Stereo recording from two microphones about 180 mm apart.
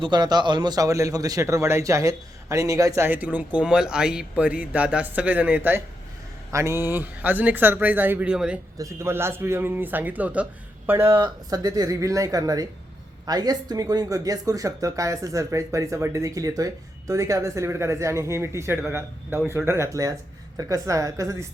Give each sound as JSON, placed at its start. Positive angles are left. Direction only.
{"t": 0.0, "sound": "speech", "side_deg": -25}
{"t": 11.1, "sound": "speech", "side_deg": -20}